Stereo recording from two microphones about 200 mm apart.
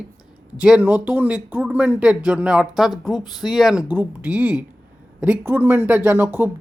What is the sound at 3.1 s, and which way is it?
Speech, 20° left (ahead or behind).